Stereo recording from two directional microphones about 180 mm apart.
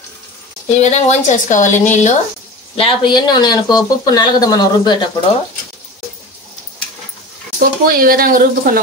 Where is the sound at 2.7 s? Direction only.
30° left (ahead or behind).